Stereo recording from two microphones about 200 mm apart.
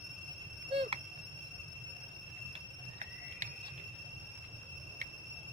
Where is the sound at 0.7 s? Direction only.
30° right (ahead or behind).